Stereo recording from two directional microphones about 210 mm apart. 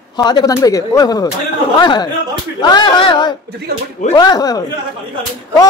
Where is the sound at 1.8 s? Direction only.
20° left (ahead or behind).